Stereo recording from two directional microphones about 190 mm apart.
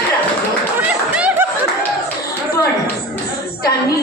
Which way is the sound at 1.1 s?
5° right (ahead or behind).